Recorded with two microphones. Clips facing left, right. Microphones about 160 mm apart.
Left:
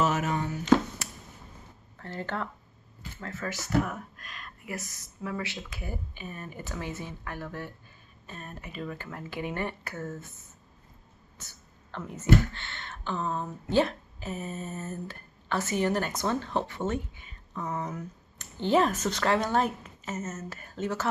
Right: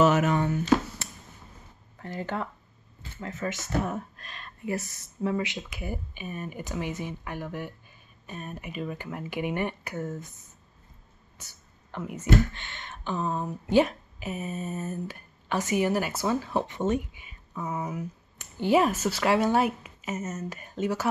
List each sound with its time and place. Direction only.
0.0 s speech: 70° right (ahead or behind)
2.0 s speech: 15° right (ahead or behind)